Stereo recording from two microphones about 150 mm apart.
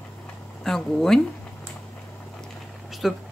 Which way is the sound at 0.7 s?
5° left (ahead or behind).